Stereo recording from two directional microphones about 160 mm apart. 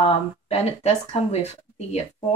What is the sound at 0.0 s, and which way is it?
Speech, 40° left (ahead or behind).